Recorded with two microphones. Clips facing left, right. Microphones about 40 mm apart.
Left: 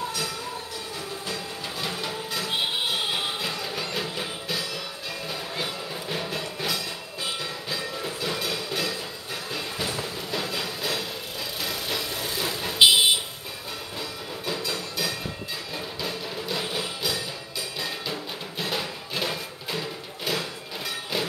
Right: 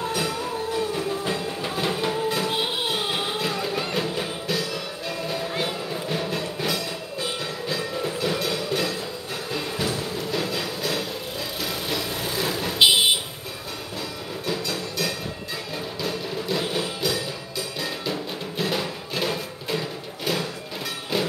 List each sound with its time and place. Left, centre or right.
0.9 s train: right; by 3.5 s centre
3.9 s music: centre
11.6 s vehicle: centre
13.9 s train: centre
15.7 s music: centre